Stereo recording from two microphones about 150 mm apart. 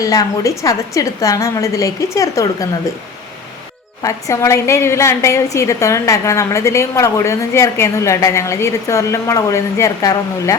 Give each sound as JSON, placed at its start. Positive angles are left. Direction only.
{"t": 0.0, "sound": "a woman's voice", "side_deg": 25}
{"t": 4.0, "sound": "a woman's voice", "side_deg": 20}